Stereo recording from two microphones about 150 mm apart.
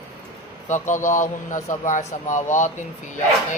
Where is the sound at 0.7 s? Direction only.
55° left (ahead or behind).